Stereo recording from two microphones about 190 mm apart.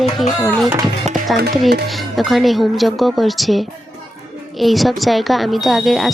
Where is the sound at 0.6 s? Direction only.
20° right (ahead or behind).